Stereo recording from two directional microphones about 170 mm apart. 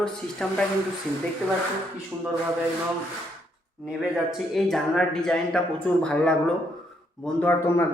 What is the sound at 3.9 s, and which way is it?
A man's voice, 5° right (ahead or behind).